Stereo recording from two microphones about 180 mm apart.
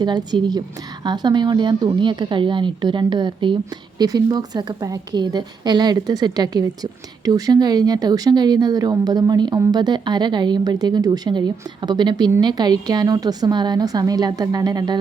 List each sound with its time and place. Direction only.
0.0 s speech: 25° right (ahead or behind)